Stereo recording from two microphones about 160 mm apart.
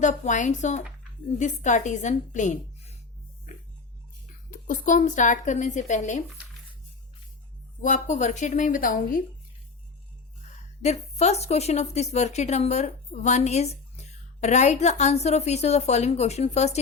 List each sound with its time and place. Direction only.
0.0 s a woman's voice: 50° left (ahead or behind)
4.5 s a woman's voice: 55° left (ahead or behind)
7.8 s a woman's voice: 50° left (ahead or behind)
10.8 s a woman's voice: 45° left (ahead or behind)